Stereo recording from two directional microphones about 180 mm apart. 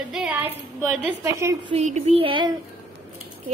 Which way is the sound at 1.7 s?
35° right (ahead or behind).